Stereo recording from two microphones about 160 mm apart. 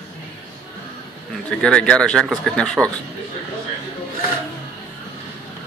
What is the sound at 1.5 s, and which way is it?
Speech, 5° left (ahead or behind).